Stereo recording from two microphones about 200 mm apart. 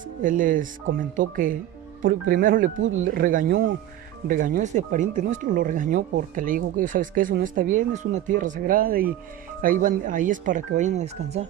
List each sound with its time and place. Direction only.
0.2 s speech: 40° right (ahead or behind)